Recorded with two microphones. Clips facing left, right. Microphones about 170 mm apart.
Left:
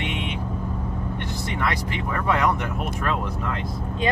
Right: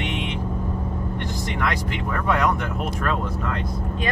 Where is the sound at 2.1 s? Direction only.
10° left (ahead or behind).